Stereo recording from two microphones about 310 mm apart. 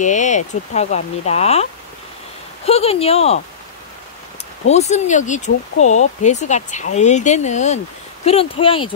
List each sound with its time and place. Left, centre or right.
0.0 s speech: left
4.6 s speech: left